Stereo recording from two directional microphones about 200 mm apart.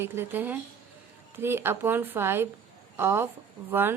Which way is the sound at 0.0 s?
10° right (ahead or behind).